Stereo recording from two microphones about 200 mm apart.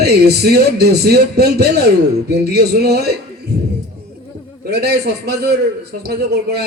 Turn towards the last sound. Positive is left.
turn(degrees=-55)  # may be behind; listen again after turning